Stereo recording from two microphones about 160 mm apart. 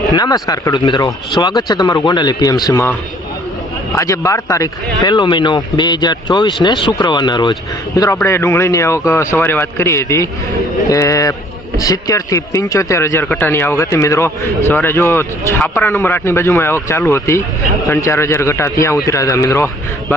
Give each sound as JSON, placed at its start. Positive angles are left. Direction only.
{"t": 0.2, "sound": "speech", "side_deg": 25}
{"t": 3.9, "sound": "speech", "side_deg": 20}